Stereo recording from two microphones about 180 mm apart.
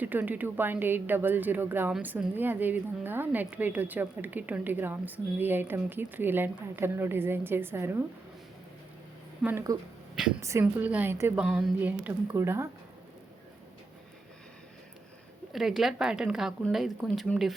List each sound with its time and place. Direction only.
0.0 s a woman's voice: 10° right (ahead or behind)
9.4 s a woman's voice: 10° right (ahead or behind)
15.5 s a woman's voice: centre (ahead or behind)